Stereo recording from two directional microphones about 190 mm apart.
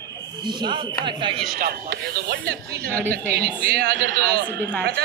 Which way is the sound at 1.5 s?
50° right (ahead or behind).